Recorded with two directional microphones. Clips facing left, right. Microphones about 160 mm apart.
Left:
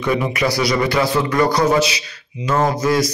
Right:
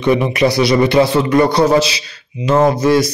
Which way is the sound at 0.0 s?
25° right (ahead or behind).